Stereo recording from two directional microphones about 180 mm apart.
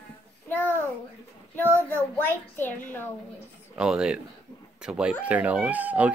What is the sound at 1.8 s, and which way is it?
A child's voice, 10° left (ahead or behind).